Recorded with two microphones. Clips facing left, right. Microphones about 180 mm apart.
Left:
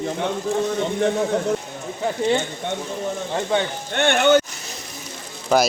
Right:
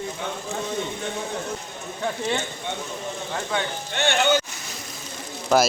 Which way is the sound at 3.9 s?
55° left (ahead or behind).